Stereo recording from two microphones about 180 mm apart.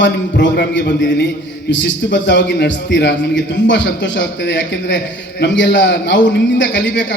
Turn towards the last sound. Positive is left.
turn(degrees=85)